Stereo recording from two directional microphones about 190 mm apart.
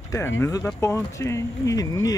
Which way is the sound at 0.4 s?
15° left (ahead or behind).